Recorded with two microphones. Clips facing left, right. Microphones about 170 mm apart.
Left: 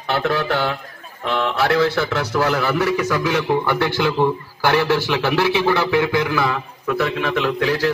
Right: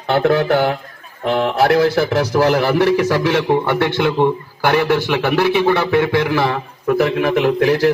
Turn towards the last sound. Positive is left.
turn(degrees=-50)  # may be behind; listen again after turning